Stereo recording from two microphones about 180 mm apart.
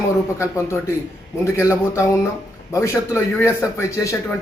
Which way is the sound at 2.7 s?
15° left (ahead or behind).